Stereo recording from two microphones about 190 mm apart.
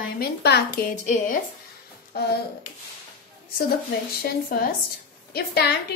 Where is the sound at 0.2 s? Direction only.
60° left (ahead or behind).